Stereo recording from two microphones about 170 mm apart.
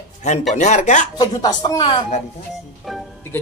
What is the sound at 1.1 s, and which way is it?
Speech, 25° left (ahead or behind).